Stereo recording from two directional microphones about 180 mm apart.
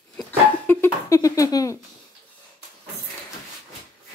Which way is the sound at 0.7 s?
15° left (ahead or behind).